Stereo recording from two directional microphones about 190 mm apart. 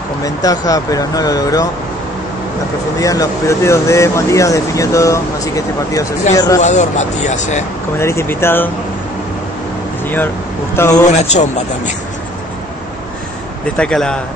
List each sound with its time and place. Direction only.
0.2 s speech: 20° left (ahead or behind)
3.0 s speech: 15° left (ahead or behind)
6.6 s speech: 40° left (ahead or behind)
8.0 s speech: 15° left (ahead or behind)
10.0 s speech: 10° left (ahead or behind)
11.1 s speech: 35° left (ahead or behind)
13.7 s a man's voice: 5° left (ahead or behind)